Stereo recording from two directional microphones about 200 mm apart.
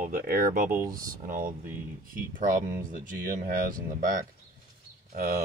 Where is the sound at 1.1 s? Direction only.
45° right (ahead or behind).